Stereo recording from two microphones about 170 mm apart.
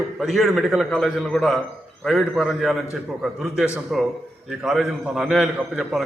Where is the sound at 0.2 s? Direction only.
Centre (ahead or behind).